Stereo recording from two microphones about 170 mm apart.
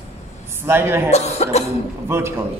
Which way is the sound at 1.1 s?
40° left (ahead or behind).